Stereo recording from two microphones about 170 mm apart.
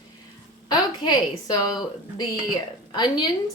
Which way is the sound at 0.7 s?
25° left (ahead or behind).